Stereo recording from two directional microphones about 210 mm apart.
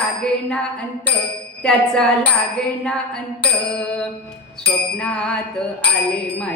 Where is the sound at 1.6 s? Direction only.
5° left (ahead or behind).